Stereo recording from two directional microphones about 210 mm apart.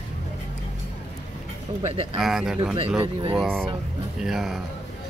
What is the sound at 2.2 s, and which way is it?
Speech, centre (ahead or behind).